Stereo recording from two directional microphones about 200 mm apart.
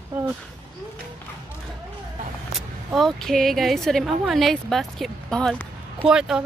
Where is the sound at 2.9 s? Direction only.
Centre (ahead or behind).